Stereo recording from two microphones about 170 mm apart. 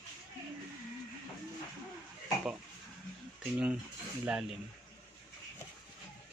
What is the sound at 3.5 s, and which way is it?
Speech, 5° right (ahead or behind).